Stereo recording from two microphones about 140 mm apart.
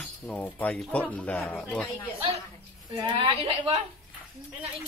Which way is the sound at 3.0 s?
35° right (ahead or behind).